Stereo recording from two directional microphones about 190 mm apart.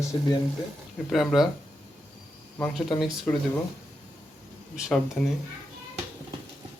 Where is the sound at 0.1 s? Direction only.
20° left (ahead or behind).